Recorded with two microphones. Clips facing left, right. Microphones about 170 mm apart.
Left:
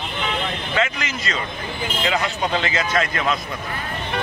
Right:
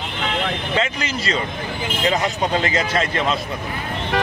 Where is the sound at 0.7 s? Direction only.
30° right (ahead or behind).